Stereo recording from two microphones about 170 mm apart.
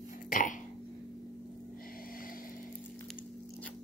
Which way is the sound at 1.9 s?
55° left (ahead or behind).